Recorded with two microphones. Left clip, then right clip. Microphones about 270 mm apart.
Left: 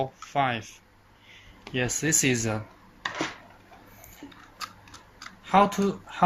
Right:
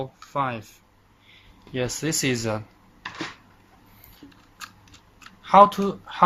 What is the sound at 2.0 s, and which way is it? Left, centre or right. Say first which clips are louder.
Speech: left 1 dB; right.